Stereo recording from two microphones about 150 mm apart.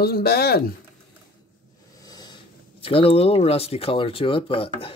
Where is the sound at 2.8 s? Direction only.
40° left (ahead or behind).